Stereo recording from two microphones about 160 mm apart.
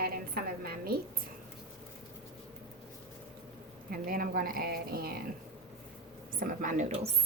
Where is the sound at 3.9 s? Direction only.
65° right (ahead or behind).